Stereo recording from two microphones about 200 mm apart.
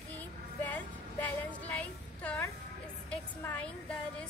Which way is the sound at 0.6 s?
10° left (ahead or behind).